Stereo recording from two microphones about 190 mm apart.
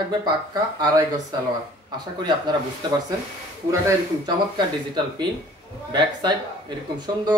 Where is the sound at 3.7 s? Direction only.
15° right (ahead or behind).